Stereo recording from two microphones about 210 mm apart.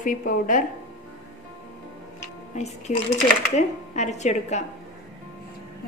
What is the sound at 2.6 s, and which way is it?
Speech, 30° left (ahead or behind).